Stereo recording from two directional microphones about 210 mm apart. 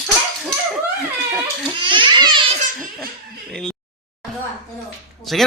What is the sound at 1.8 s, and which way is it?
Speech, 20° right (ahead or behind).